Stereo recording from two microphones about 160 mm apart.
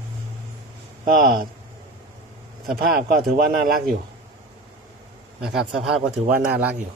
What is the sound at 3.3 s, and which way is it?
Speech, 70° right (ahead or behind).